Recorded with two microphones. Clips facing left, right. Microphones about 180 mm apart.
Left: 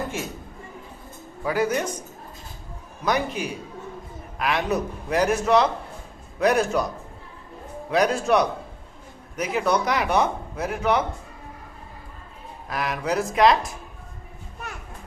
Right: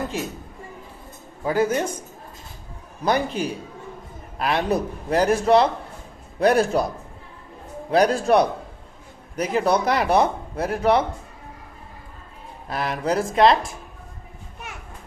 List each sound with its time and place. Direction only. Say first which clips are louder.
1.4 s a man's voice: right 2 dB; 25° right (ahead or behind)
3.1 s speech: right 2 dB; 30° right (ahead or behind)
7.9 s speech: right 3 dB; 35° right (ahead or behind)
12.6 s a man's voice: right 2 dB; 30° right (ahead or behind)